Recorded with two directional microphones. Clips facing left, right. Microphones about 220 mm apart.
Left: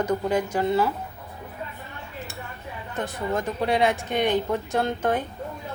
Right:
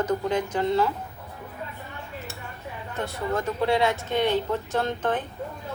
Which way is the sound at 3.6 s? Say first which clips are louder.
Left 1 dB; 15° left (ahead or behind).